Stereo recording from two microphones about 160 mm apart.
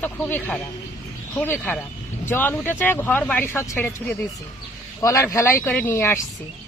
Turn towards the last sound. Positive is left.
turn(degrees=15)  # may be behind; listen again after turning